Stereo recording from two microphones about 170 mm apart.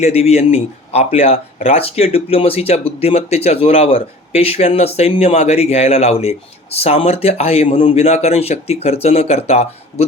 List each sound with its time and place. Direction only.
0.0 s speech: 40° left (ahead or behind)